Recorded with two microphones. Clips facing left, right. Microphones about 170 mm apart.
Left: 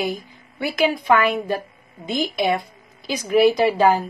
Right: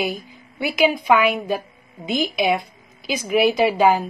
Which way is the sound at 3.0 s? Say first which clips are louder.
Left 2 dB; 5° right (ahead or behind).